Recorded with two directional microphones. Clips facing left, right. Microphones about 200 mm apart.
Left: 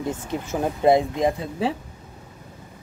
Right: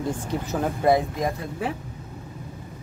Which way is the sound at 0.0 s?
20° left (ahead or behind).